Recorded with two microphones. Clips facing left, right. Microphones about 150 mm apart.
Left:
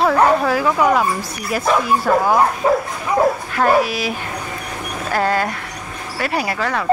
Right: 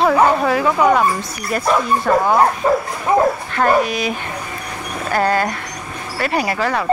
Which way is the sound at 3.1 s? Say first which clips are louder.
Right 2 dB; 50° right (ahead or behind).